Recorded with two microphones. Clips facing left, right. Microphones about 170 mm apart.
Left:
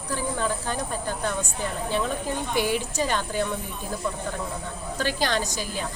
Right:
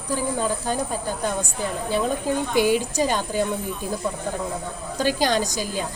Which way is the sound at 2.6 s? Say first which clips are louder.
Right 5 dB; 15° right (ahead or behind).